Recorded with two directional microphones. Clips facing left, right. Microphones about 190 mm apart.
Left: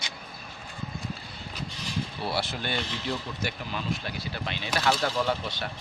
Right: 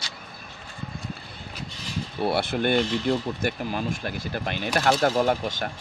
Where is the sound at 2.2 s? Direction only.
55° right (ahead or behind).